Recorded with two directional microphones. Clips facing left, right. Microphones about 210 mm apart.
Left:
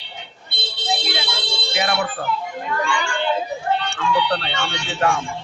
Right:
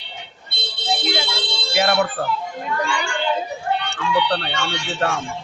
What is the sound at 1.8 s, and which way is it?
Speech, 45° right (ahead or behind).